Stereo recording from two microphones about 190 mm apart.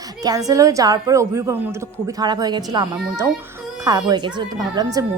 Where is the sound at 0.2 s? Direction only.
20° right (ahead or behind).